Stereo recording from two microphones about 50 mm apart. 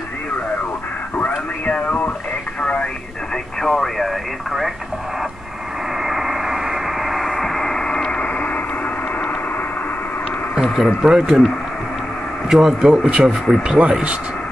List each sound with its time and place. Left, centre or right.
1.7 s speech: left
3.6 s speech: centre
6.0 s a sound: centre; by 8.5 s left
10.5 s speech: centre
12.4 s speech: centre